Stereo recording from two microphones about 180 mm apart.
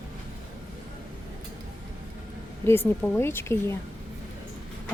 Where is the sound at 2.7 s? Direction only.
10° left (ahead or behind).